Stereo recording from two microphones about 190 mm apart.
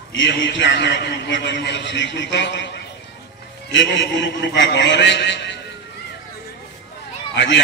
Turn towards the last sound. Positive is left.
turn(degrees=70)  # may be behind; listen again after turning